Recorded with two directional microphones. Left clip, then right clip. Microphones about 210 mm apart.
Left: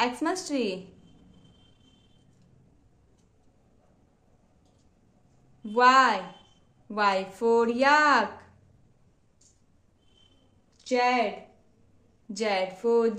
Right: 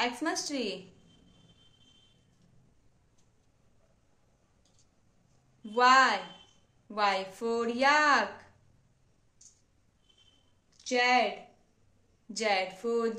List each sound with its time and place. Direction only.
0.0 s a woman's voice: 20° left (ahead or behind)
5.8 s a woman's voice: 15° left (ahead or behind)
10.8 s speech: 10° left (ahead or behind)
12.3 s a woman's voice: 15° left (ahead or behind)